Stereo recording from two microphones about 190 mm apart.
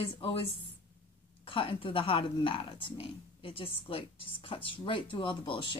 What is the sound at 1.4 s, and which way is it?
A woman's voice, 30° left (ahead or behind).